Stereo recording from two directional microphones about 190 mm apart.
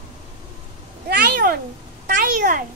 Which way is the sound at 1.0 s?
55° right (ahead or behind).